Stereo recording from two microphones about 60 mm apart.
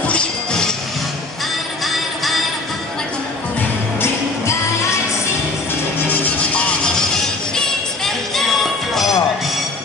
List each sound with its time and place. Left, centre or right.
0.0 s music: centre
1.9 s music: centre
6.8 s music: centre